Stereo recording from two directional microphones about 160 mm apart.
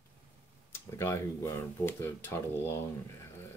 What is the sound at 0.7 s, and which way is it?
Speech, 15° left (ahead or behind).